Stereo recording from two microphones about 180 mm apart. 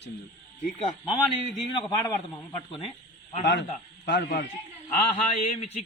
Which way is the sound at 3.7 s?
50° left (ahead or behind).